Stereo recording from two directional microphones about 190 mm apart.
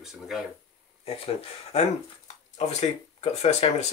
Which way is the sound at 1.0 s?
30° left (ahead or behind).